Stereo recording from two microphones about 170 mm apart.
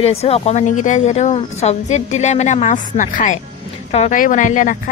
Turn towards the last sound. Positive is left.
turn(degrees=50)  # may be behind; listen again after turning